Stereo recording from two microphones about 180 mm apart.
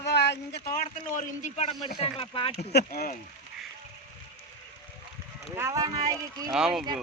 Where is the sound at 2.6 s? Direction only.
60° left (ahead or behind).